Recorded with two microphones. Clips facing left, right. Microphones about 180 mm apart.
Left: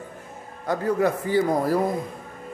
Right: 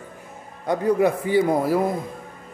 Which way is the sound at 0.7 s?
15° right (ahead or behind).